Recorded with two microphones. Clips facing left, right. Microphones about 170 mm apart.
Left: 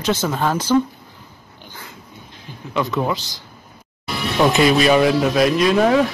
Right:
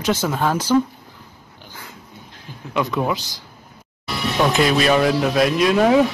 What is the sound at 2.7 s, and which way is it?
Speech, 5° right (ahead or behind).